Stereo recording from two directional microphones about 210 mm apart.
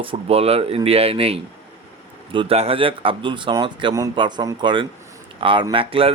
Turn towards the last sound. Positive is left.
turn(degrees=-25)  # may be behind; listen again after turning